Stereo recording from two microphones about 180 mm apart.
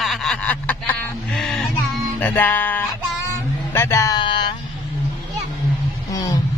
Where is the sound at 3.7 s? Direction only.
15° left (ahead or behind).